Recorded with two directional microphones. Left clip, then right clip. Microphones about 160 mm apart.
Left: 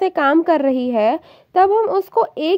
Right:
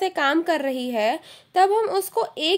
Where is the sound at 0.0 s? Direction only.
35° left (ahead or behind).